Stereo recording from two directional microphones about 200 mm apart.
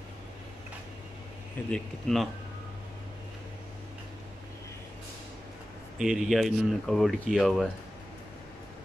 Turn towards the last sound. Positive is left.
turn(degrees=0)  # may be behind; listen again after turning